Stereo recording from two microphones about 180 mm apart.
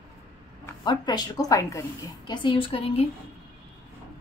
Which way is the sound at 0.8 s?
25° left (ahead or behind).